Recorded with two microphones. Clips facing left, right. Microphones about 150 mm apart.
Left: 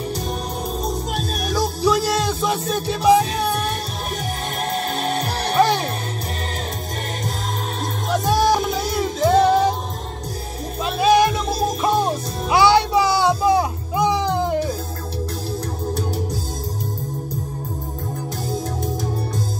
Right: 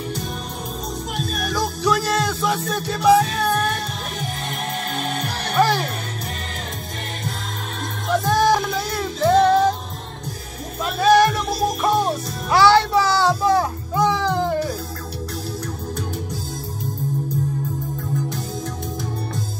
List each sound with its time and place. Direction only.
1.8 s music: 20° left (ahead or behind)
4.9 s music: 35° left (ahead or behind)
8.3 s music: 10° left (ahead or behind)
10.8 s music: 15° left (ahead or behind)